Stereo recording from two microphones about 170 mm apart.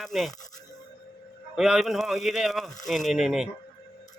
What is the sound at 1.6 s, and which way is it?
Speech, 5° right (ahead or behind).